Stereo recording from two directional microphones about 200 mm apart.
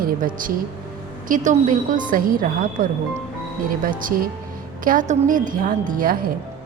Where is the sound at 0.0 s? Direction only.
45° right (ahead or behind).